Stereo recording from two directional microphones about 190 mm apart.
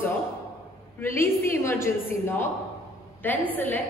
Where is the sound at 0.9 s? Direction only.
10° left (ahead or behind).